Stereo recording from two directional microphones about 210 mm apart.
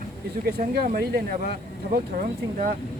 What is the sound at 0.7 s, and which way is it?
Speech, 45° right (ahead or behind).